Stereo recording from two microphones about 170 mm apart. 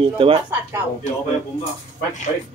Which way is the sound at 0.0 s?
30° right (ahead or behind).